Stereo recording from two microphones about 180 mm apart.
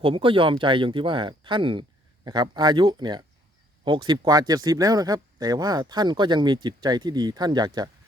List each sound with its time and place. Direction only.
0.0 s speech: 30° right (ahead or behind)